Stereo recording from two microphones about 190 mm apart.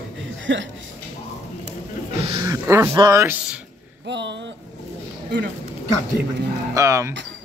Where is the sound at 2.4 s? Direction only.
15° right (ahead or behind).